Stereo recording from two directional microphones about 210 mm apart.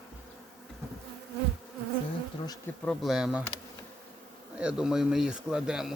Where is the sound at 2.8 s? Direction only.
Centre (ahead or behind).